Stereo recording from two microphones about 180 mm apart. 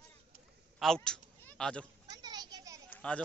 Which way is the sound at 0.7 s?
5° left (ahead or behind).